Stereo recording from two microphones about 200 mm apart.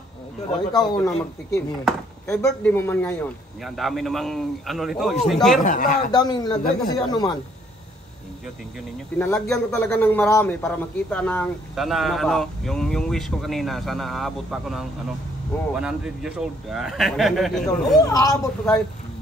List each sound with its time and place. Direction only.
0.7 s speech: 20° left (ahead or behind)
1.9 s speech: 5° left (ahead or behind)
5.6 s speech: 40° left (ahead or behind)
6.1 s speech: 20° left (ahead or behind)
9.2 s speech: 10° left (ahead or behind)
17.6 s speech: 20° left (ahead or behind)